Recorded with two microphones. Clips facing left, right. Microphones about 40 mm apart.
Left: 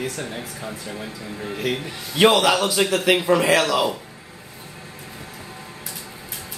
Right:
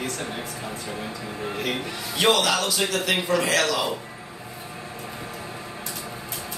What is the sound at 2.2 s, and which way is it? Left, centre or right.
A man's voice, centre.